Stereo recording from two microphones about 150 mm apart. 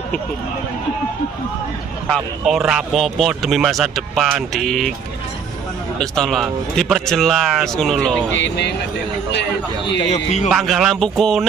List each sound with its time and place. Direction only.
2.1 s speech: centre (ahead or behind)
5.9 s speech: 5° left (ahead or behind)
10.1 s a man's voice: 50° left (ahead or behind)
10.5 s speech: centre (ahead or behind)